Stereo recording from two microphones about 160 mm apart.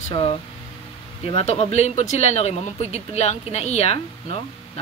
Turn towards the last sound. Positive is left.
turn(degrees=40)  # may be behind; listen again after turning